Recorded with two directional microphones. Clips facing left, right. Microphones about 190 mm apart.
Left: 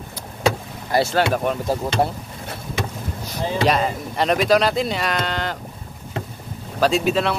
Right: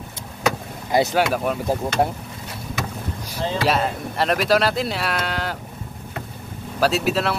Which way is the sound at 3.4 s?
15° left (ahead or behind).